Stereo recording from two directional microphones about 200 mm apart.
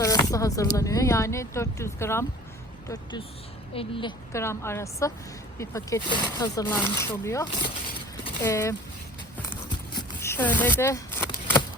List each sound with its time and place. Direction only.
0.0 s speech: 15° left (ahead or behind)
4.3 s speech: 15° left (ahead or behind)
9.9 s a sound: 15° left (ahead or behind)